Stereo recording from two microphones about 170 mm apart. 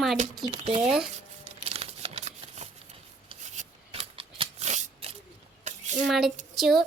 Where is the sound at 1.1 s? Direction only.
35° right (ahead or behind).